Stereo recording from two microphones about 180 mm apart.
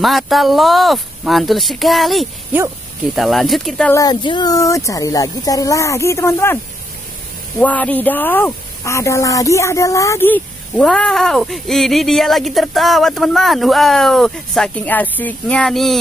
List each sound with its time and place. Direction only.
0.0 s speech: centre (ahead or behind)
3.9 s speech: 20° left (ahead or behind); by 16.0 s centre (ahead or behind)